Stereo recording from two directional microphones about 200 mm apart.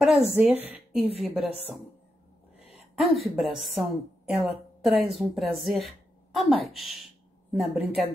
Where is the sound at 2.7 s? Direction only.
Centre (ahead or behind).